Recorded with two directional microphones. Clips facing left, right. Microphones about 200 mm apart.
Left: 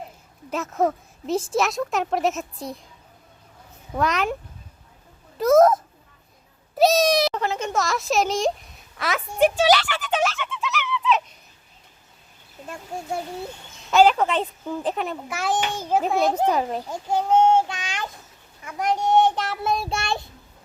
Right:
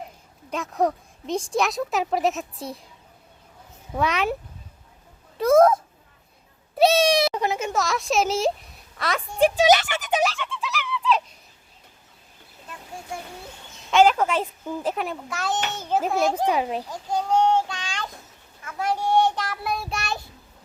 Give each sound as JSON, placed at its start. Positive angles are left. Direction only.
{"t": 0.5, "sound": "speech", "side_deg": 0}
{"t": 3.9, "sound": "speech", "side_deg": 0}
{"t": 5.4, "sound": "a child's voice", "side_deg": 0}
{"t": 7.3, "sound": "speech", "side_deg": -10}
{"t": 7.7, "sound": "speech", "side_deg": 0}
{"t": 9.9, "sound": "a child's voice", "side_deg": -15}
{"t": 10.2, "sound": "fowl", "side_deg": 0}
{"t": 14.1, "sound": "a child's voice", "side_deg": -5}
{"t": 16.9, "sound": "child singing", "side_deg": 25}
{"t": 18.6, "sound": "a child's voice", "side_deg": 15}